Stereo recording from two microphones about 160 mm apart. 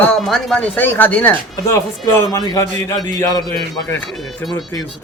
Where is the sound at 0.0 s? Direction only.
5° left (ahead or behind); by 3.5 s 20° left (ahead or behind).